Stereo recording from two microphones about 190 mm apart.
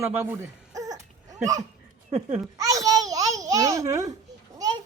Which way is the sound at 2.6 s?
20° right (ahead or behind).